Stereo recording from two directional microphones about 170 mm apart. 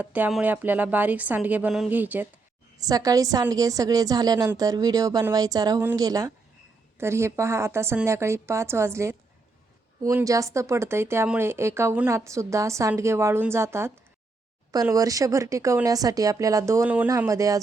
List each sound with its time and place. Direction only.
0.0 s speech: 10° right (ahead or behind)
2.7 s a woman's voice: 20° right (ahead or behind)